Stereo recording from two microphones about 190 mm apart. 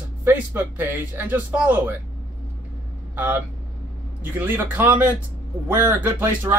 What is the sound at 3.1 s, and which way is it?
Speech, 10° right (ahead or behind).